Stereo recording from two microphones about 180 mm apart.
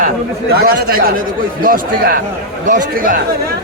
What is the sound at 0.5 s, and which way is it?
A man's voice, 55° right (ahead or behind).